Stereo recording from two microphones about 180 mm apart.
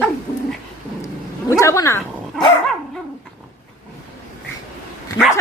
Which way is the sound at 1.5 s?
20° left (ahead or behind).